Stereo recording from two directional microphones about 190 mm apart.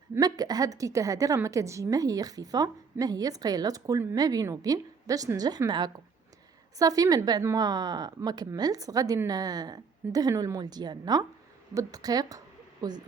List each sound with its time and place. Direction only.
0.1 s a woman's voice: 20° right (ahead or behind)